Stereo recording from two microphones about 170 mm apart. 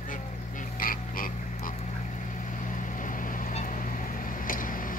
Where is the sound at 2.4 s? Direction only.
50° left (ahead or behind).